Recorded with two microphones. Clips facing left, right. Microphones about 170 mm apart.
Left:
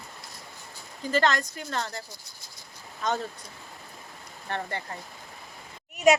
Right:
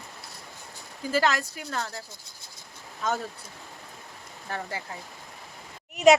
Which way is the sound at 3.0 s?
5° right (ahead or behind).